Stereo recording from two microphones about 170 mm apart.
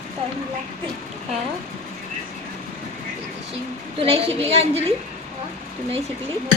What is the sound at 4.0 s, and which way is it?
Speech, 35° right (ahead or behind).